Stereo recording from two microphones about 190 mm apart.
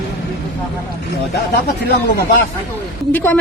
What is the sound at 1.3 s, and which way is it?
Speech, 60° left (ahead or behind).